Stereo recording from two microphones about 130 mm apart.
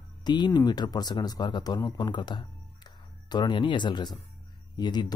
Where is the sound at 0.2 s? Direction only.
35° left (ahead or behind).